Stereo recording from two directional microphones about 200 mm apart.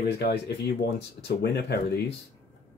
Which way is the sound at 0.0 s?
55° left (ahead or behind).